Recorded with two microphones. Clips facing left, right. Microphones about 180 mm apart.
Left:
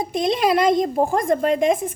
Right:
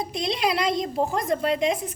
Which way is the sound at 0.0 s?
50° left (ahead or behind).